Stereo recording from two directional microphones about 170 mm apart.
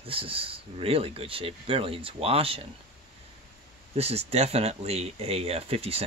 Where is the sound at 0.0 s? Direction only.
30° right (ahead or behind).